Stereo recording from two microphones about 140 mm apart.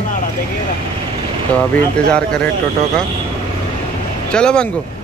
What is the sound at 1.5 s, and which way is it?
Speech, 10° left (ahead or behind).